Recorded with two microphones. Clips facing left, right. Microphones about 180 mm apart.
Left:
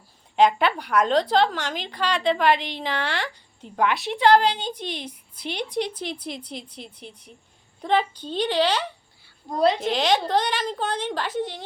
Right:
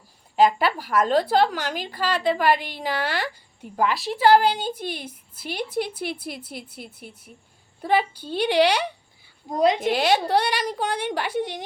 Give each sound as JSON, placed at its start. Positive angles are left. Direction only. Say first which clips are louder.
{"t": 0.3, "sound": "a woman's voice", "louder": "even", "side_deg": -5}